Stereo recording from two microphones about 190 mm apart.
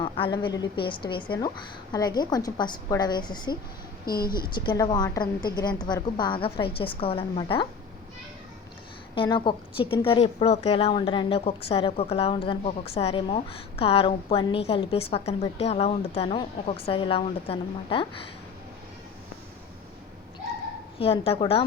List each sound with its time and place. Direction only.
0.0 s a woman's voice: 25° left (ahead or behind)
4.0 s speech: 50° left (ahead or behind)
4.4 s a woman's voice: 25° left (ahead or behind)
9.1 s a woman's voice: 25° left (ahead or behind)
21.0 s a woman's voice: 30° left (ahead or behind)